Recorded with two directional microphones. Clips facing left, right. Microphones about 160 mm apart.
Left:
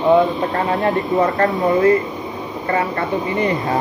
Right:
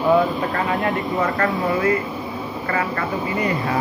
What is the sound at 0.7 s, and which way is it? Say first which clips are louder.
Speech: left 4 dB; 35° left (ahead or behind).